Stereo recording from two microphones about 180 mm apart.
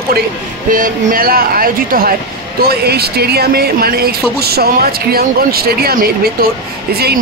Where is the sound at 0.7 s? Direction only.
50° right (ahead or behind).